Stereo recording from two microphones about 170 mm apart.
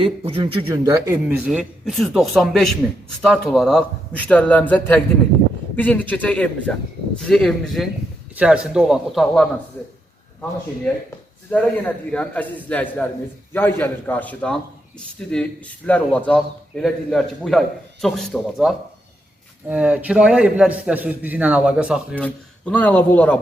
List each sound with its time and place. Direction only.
0.0 s a man's voice: 30° right (ahead or behind)
0.7 s a man's voice: 20° right (ahead or behind)
1.5 s a man's voice: 5° right (ahead or behind)
11.5 s a man's voice: 5° left (ahead or behind)
22.2 s speech: 10° left (ahead or behind)